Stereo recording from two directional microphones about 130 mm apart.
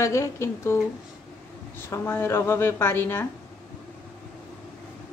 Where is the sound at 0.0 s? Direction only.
25° left (ahead or behind).